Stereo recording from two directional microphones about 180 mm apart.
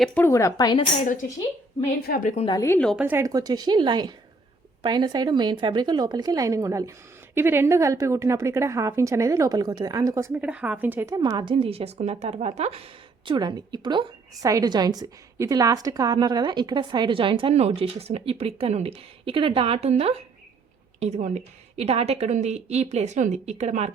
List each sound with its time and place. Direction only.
0.0 s speech: 10° left (ahead or behind)
1.0 s a woman's voice: 45° left (ahead or behind)
2.3 s a woman's voice: 35° left (ahead or behind)
2.6 s speech: 10° left (ahead or behind)
2.9 s a woman's voice: 10° right (ahead or behind); by 12.8 s 35° right (ahead or behind)
13.2 s a woman's voice: 25° right (ahead or behind)